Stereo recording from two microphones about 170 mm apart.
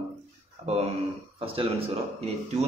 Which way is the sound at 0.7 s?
40° right (ahead or behind).